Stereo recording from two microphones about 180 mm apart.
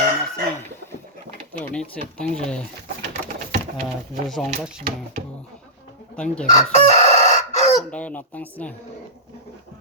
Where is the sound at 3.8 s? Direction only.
Centre (ahead or behind).